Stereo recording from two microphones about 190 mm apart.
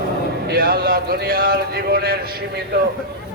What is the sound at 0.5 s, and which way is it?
A man's voice, 50° right (ahead or behind).